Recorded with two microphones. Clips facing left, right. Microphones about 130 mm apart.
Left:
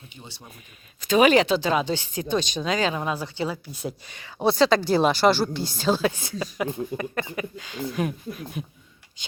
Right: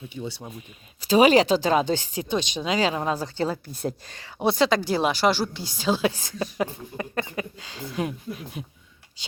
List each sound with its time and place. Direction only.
1.0 s speech: 30° right (ahead or behind)
2.1 s speech: 20° right (ahead or behind)
3.2 s a woman's voice: 40° right (ahead or behind)
4.4 s speech: 20° right (ahead or behind)
4.9 s speech: 10° right (ahead or behind)
6.0 s speech: 35° right (ahead or behind)